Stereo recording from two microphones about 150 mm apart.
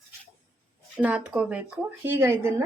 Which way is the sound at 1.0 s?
10° right (ahead or behind).